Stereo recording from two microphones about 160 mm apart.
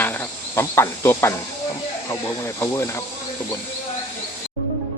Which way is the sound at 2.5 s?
15° left (ahead or behind).